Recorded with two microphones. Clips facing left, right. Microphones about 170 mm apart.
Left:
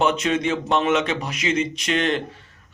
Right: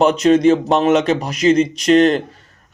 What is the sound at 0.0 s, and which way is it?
Speech, 40° right (ahead or behind).